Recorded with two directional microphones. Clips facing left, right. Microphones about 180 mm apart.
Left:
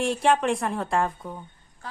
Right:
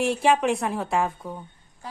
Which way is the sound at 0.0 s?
Centre (ahead or behind).